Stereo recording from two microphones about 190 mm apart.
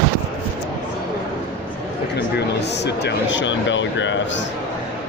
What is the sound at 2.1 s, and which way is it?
Speech, 65° left (ahead or behind).